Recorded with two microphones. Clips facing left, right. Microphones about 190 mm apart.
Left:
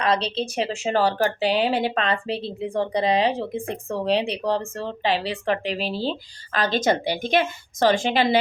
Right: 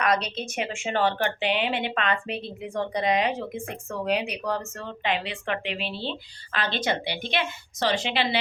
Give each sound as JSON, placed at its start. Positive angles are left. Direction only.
{"t": 0.0, "sound": "speech", "side_deg": 30}